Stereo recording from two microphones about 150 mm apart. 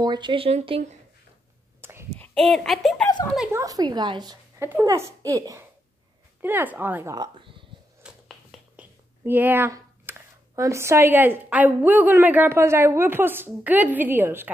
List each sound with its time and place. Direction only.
0.0 s speech: 30° right (ahead or behind)
1.8 s a sound: 15° right (ahead or behind)
2.1 s a child's voice: 5° left (ahead or behind)
3.5 s a woman's voice: 25° right (ahead or behind)
4.6 s a woman's voice: 10° right (ahead or behind)
7.2 s speech: 35° right (ahead or behind)
8.0 s a sound: 5° right (ahead or behind)
9.2 s speech: 15° right (ahead or behind)